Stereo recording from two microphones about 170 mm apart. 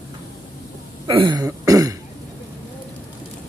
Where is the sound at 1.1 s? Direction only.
25° right (ahead or behind).